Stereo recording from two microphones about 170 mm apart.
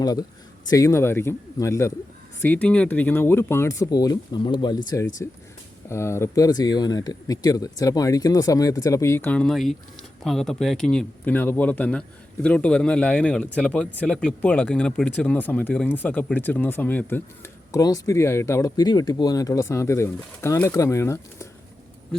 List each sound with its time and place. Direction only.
0.0 s speech: 20° left (ahead or behind)
5.2 s speech: 15° left (ahead or behind)